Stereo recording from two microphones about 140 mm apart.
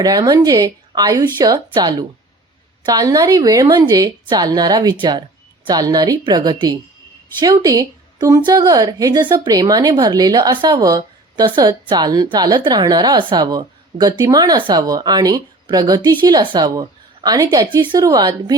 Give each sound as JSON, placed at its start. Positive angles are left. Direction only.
{"t": 0.0, "sound": "a woman's voice", "side_deg": -30}